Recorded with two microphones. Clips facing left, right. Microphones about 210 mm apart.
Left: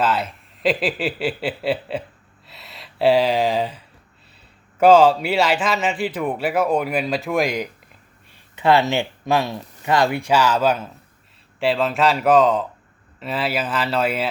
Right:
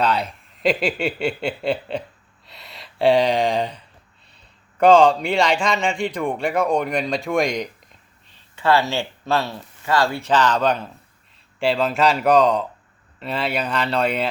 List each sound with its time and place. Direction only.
0.0 s a man's voice: centre (ahead or behind)
8.3 s a man's voice: 20° left (ahead or behind); by 14.3 s 5° left (ahead or behind)